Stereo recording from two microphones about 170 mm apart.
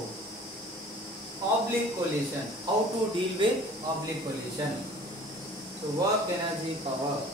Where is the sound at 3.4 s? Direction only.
30° right (ahead or behind).